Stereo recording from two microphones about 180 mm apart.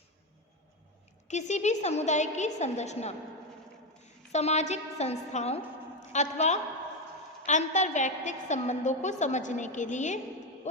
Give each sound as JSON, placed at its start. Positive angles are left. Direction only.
{"t": 1.3, "sound": "a woman's voice", "side_deg": 40}